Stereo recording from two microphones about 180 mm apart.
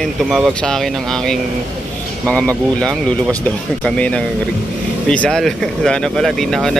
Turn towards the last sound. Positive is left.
turn(degrees=0)  # may be behind; listen again after turning